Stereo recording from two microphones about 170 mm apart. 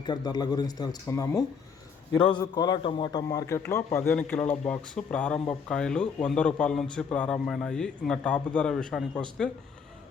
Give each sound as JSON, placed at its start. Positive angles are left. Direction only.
{"t": 0.0, "sound": "a man's voice", "side_deg": 25}